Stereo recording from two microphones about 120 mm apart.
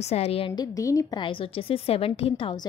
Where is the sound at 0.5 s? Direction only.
30° left (ahead or behind).